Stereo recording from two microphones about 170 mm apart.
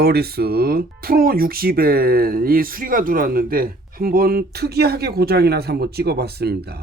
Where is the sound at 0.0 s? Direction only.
65° right (ahead or behind).